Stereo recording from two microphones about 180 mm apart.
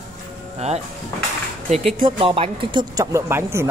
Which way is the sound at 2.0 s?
30° right (ahead or behind).